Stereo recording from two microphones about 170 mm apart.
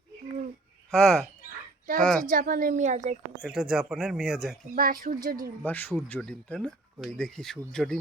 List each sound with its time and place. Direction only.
0.9 s speech: centre (ahead or behind)
2.2 s a woman's voice: 55° right (ahead or behind)
3.4 s speech: 5° right (ahead or behind)
4.7 s speech: 55° right (ahead or behind)
5.6 s speech: 10° left (ahead or behind)